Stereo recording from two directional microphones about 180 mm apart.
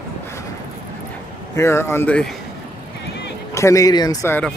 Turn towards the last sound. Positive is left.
turn(degrees=15)  # may be behind; listen again after turning